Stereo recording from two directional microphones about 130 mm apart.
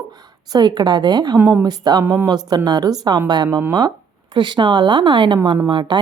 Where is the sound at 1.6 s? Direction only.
30° right (ahead or behind).